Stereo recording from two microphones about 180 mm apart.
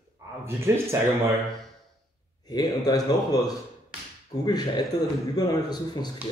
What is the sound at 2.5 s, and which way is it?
Speech, 20° left (ahead or behind).